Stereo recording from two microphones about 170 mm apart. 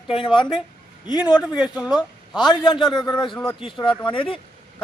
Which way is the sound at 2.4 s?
25° left (ahead or behind).